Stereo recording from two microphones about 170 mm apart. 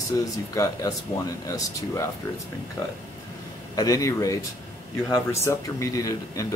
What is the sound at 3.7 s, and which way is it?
Speech, 20° left (ahead or behind).